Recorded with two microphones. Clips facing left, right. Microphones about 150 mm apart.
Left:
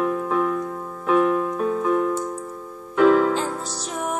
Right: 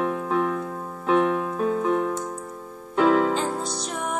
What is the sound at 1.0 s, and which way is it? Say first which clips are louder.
Keyboard: left 2 dB; 30° right (ahead or behind).